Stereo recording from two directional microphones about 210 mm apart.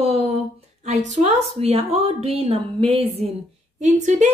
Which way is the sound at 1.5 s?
30° right (ahead or behind).